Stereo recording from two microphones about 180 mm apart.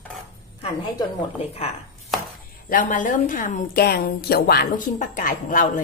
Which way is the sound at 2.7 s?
50° left (ahead or behind).